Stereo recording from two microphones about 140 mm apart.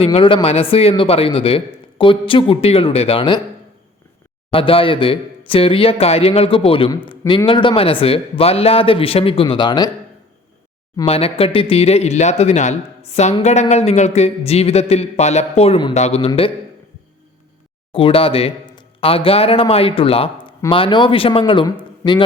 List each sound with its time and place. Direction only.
0.0 s speech: 40° left (ahead or behind)
4.5 s a man's voice: 40° left (ahead or behind)
11.0 s a man's voice: 45° left (ahead or behind)
17.9 s speech: 40° left (ahead or behind)